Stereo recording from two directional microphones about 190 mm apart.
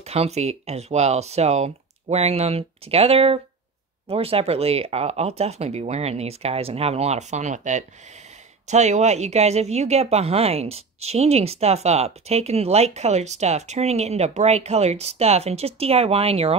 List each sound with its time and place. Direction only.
0.0 s speech: 35° right (ahead or behind)